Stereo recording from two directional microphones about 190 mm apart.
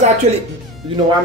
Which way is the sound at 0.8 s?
25° right (ahead or behind).